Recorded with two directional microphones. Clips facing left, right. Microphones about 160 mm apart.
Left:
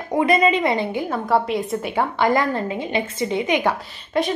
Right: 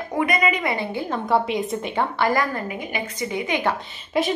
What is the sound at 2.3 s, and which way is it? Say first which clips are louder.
A woman's voice: left 3 dB; 25° left (ahead or behind).